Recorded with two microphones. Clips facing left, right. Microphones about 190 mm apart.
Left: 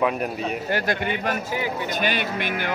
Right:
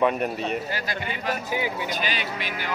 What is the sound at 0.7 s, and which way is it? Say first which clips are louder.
Speech: left 6 dB; 60° left (ahead or behind).